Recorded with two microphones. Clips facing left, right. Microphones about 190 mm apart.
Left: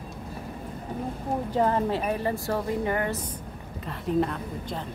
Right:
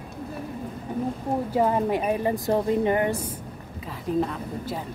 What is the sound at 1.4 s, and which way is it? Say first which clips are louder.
Speech: right 1 dB; 10° right (ahead or behind).